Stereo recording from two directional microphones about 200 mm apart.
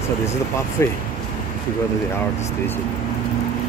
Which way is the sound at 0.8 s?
15° left (ahead or behind).